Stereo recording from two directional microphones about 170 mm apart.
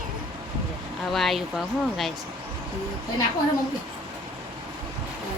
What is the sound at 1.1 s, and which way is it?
Speech, centre (ahead or behind).